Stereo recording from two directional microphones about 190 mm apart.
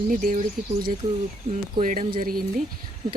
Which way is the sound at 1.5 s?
45° right (ahead or behind).